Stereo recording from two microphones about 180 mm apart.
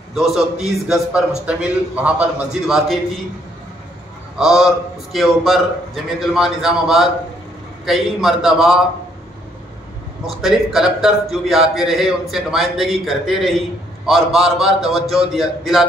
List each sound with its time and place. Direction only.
0.1 s a man's voice: centre (ahead or behind)
4.4 s a man's voice: 5° right (ahead or behind)
10.2 s a man's voice: centre (ahead or behind)